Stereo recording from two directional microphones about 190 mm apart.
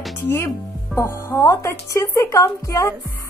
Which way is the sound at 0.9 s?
15° left (ahead or behind).